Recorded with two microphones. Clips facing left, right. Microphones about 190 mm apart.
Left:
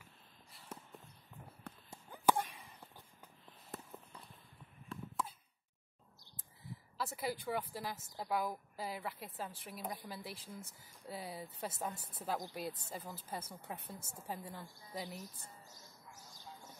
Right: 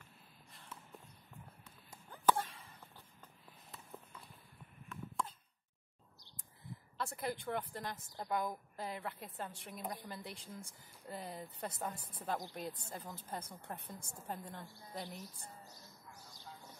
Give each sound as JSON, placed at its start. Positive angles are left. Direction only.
{"t": 0.7, "sound": "walk", "side_deg": 45}
{"t": 1.6, "sound": "a sound", "side_deg": 60}
{"t": 2.0, "sound": "a sound", "side_deg": 10}
{"t": 3.7, "sound": "walk", "side_deg": 50}
{"t": 4.9, "sound": "chop", "side_deg": 30}
{"t": 7.0, "sound": "a woman's voice", "side_deg": 5}